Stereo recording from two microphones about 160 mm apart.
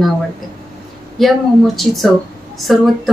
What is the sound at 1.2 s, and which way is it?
A woman's voice, centre (ahead or behind).